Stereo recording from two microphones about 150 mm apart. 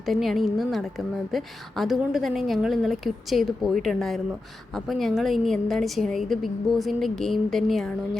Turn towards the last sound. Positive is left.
turn(degrees=0)  # may be behind; listen again after turning